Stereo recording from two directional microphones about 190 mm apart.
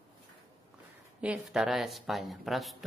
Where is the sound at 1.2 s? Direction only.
5° right (ahead or behind).